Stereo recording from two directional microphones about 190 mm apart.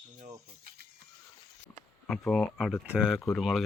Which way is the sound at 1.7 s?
5° left (ahead or behind).